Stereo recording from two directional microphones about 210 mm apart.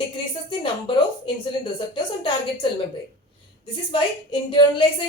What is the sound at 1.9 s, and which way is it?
Speech, 25° left (ahead or behind).